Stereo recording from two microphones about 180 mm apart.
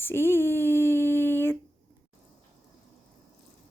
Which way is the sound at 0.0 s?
15° left (ahead or behind).